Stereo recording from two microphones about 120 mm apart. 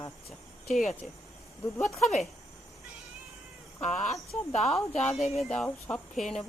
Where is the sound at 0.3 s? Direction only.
Centre (ahead or behind).